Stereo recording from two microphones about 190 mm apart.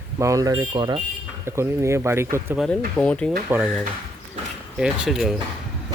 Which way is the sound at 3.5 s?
10° right (ahead or behind).